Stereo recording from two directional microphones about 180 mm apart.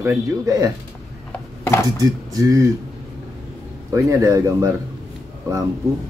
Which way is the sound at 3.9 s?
15° right (ahead or behind).